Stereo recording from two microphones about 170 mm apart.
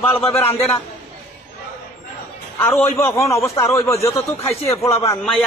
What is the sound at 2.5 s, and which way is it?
A man's voice, 15° left (ahead or behind).